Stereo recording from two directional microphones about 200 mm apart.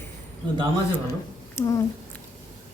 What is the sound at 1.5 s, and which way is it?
Speech, 20° left (ahead or behind).